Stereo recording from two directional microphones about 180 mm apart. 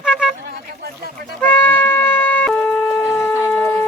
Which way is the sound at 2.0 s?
10° left (ahead or behind).